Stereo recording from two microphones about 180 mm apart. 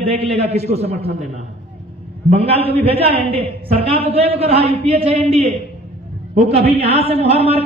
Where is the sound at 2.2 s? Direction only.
35° right (ahead or behind).